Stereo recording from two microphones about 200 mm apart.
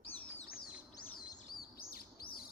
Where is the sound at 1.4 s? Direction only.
50° left (ahead or behind).